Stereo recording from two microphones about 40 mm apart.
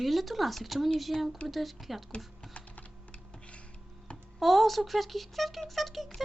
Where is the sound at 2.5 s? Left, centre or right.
Left.